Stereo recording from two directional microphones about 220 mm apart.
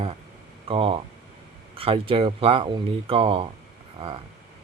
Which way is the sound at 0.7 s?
25° right (ahead or behind).